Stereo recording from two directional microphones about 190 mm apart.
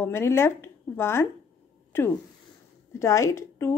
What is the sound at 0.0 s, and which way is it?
A woman's voice, 15° left (ahead or behind).